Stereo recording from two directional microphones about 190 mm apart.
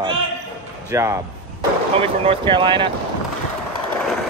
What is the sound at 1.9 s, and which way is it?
Speech, 30° right (ahead or behind).